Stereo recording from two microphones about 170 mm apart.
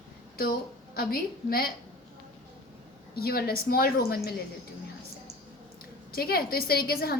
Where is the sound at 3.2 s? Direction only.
65° left (ahead or behind).